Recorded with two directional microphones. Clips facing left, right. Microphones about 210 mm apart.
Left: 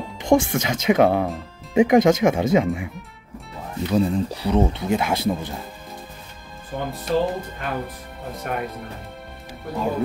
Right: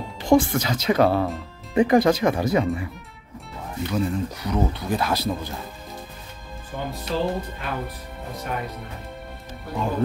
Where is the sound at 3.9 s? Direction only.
30° left (ahead or behind).